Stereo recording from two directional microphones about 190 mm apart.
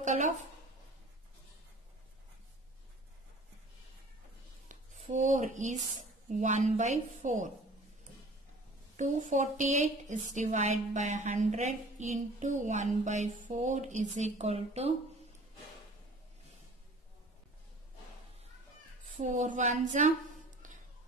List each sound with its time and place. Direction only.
0.0 s a woman's voice: 40° right (ahead or behind)
4.6 s a sound: 40° right (ahead or behind)
6.2 s speech: 40° right (ahead or behind)
8.9 s speech: 40° right (ahead or behind)
19.1 s speech: 40° right (ahead or behind)